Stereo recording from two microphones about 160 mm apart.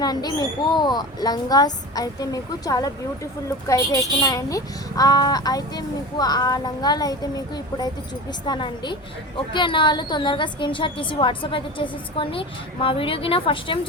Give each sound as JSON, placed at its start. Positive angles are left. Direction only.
{"t": 0.0, "sound": "a woman's voice", "side_deg": 25}